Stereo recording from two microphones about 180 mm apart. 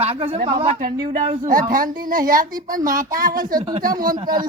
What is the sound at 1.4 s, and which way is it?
A woman's voice, 50° right (ahead or behind).